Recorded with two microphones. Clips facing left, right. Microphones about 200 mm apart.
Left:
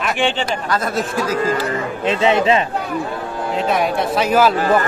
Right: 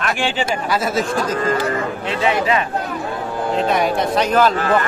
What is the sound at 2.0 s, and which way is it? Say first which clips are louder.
Speech: left 6 dB; 20° left (ahead or behind).